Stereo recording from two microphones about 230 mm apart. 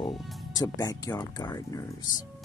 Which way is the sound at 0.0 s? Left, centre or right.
Centre.